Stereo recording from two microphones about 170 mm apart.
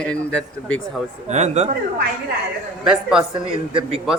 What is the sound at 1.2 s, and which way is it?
Speech, 40° right (ahead or behind).